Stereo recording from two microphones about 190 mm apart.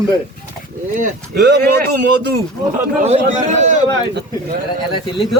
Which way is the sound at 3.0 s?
35° right (ahead or behind).